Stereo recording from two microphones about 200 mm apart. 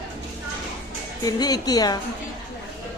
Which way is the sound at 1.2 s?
20° left (ahead or behind).